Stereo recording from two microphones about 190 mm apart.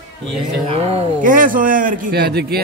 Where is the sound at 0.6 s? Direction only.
30° right (ahead or behind).